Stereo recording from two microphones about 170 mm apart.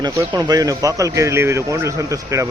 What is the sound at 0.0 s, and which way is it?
Speech, 20° right (ahead or behind).